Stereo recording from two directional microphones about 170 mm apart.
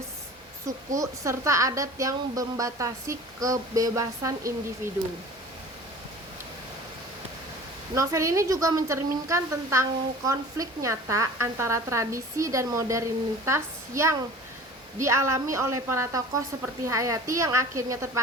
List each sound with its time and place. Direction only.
0.9 s a woman's voice: 20° right (ahead or behind)
7.9 s speech: 20° right (ahead or behind)